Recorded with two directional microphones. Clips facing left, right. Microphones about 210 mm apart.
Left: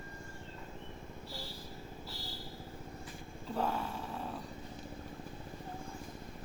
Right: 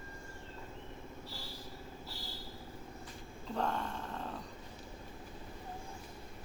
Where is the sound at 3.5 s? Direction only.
5° left (ahead or behind).